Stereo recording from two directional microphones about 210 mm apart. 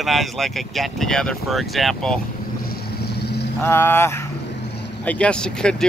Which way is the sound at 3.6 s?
10° left (ahead or behind).